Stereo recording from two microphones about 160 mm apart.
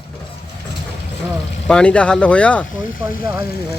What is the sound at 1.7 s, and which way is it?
Speech, 5° left (ahead or behind).